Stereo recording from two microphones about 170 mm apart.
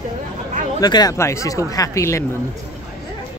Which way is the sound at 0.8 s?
25° left (ahead or behind).